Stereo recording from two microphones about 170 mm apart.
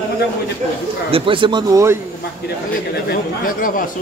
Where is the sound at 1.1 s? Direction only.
30° right (ahead or behind).